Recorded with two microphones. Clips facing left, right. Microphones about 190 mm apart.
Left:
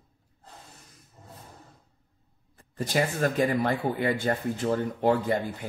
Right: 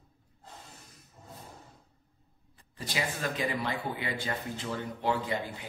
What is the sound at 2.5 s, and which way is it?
Speech, 50° left (ahead or behind).